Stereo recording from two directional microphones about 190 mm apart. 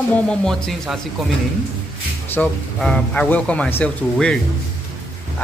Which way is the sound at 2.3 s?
5° left (ahead or behind).